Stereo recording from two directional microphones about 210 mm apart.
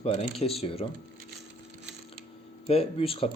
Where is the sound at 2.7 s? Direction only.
25° left (ahead or behind).